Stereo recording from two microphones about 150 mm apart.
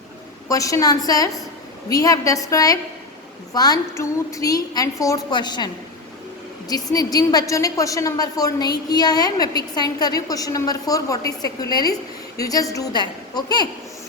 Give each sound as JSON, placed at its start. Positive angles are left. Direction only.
{"t": 0.4, "sound": "a woman's voice", "side_deg": 20}